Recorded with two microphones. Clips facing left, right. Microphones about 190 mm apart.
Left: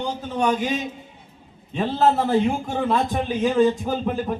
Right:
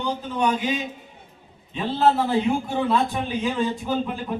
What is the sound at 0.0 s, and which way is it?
A man's voice, 45° left (ahead or behind).